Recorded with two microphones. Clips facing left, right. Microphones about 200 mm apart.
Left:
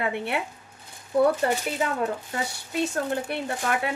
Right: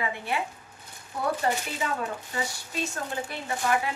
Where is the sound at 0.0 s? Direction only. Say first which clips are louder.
Left 3 dB; 65° left (ahead or behind).